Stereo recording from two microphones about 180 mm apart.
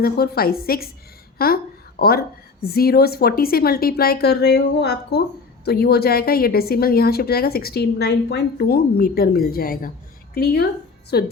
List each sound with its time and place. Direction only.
0.0 s a woman's voice: 60° left (ahead or behind)